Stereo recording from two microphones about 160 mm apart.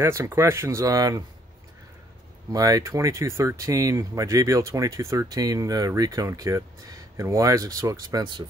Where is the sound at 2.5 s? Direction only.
20° right (ahead or behind).